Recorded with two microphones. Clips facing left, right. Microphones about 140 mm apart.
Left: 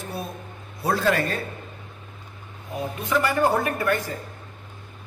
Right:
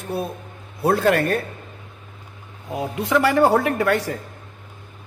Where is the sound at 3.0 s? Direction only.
85° right.